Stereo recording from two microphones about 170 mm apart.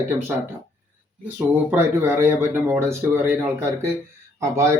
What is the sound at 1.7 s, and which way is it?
A man's voice, 15° right (ahead or behind).